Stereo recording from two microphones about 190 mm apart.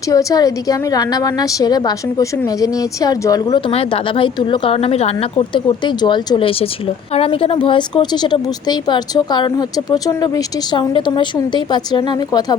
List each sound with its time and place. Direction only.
0.1 s a woman's voice: 20° left (ahead or behind)
3.7 s a woman's voice: 30° left (ahead or behind)